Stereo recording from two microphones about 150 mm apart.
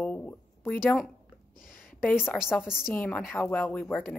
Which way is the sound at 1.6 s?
70° left (ahead or behind).